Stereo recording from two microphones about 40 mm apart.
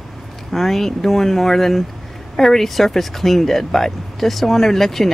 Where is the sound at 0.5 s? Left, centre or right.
Centre.